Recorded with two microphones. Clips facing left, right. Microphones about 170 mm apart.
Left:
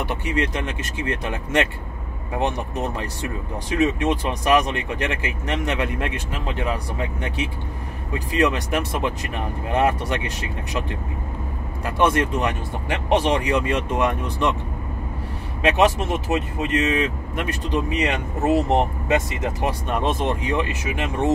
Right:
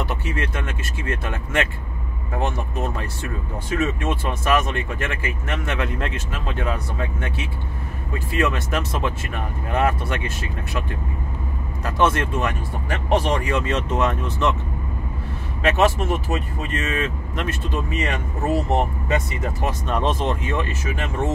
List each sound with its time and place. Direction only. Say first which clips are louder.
0.0 s speech: left 2 dB; 15° left (ahead or behind)
15.6 s speech: left 1 dB; 15° left (ahead or behind)